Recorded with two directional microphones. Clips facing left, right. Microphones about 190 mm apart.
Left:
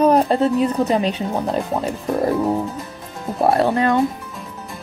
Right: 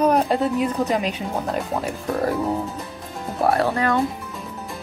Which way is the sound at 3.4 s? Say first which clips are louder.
Left 3 dB; 25° left (ahead or behind).